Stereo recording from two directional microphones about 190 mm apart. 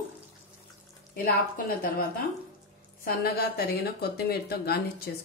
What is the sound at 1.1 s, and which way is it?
Speech, 55° left (ahead or behind).